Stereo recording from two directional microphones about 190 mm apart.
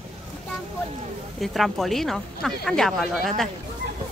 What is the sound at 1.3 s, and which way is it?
Speech, centre (ahead or behind).